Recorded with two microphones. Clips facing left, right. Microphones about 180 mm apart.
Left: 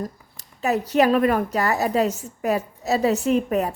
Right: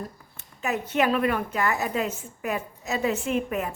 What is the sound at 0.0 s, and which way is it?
A woman's voice, 35° left (ahead or behind).